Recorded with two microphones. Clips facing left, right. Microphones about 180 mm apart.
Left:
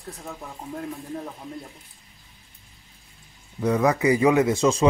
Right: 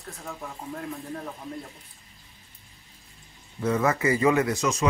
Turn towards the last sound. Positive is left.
turn(degrees=30)  # may be behind; listen again after turning